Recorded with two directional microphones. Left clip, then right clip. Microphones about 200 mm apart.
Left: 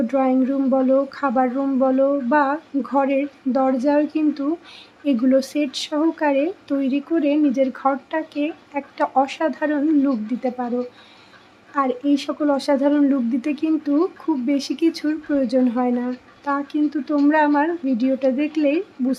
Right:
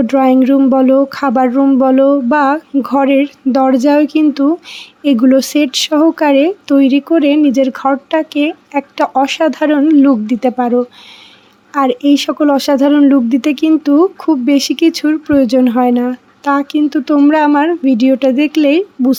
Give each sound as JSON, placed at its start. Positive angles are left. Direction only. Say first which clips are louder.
{"t": 0.1, "sound": "speech", "louder": "right 11 dB", "side_deg": -45}